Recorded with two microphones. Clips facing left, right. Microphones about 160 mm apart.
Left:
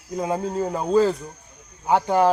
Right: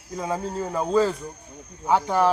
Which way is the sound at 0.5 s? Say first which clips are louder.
Left 2 dB; 25° left (ahead or behind).